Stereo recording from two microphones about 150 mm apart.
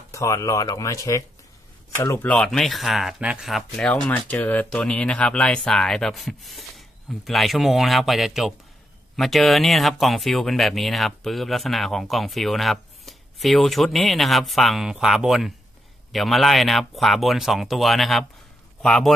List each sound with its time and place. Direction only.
0.1 s speech: 20° left (ahead or behind); by 19.1 s 5° left (ahead or behind)